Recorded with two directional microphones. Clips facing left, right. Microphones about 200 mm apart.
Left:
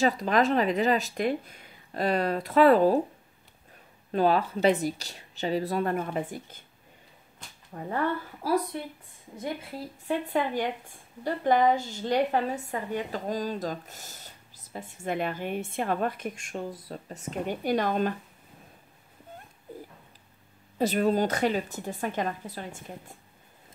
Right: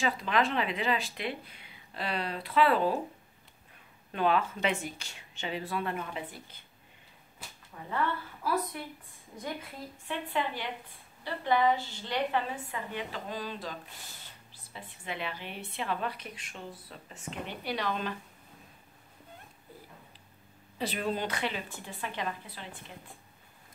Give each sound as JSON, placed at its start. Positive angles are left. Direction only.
{"t": 0.0, "sound": "a woman's voice", "side_deg": 40}
{"t": 4.1, "sound": "speech", "side_deg": 35}
{"t": 7.4, "sound": "whip", "side_deg": -5}
{"t": 7.7, "sound": "a woman's voice", "side_deg": 45}
{"t": 9.4, "sound": "a woman's voice", "side_deg": 30}
{"t": 10.1, "sound": "a woman's voice", "side_deg": 45}
{"t": 20.7, "sound": "a woman's voice", "side_deg": 45}